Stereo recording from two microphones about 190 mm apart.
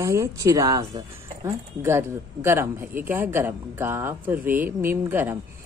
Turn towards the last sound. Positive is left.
turn(degrees=-10)  # may be behind; listen again after turning